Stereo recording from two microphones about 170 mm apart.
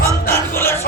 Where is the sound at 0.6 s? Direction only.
15° left (ahead or behind).